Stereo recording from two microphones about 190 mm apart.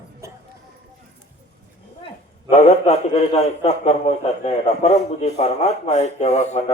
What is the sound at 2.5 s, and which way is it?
A man's voice, 35° left (ahead or behind).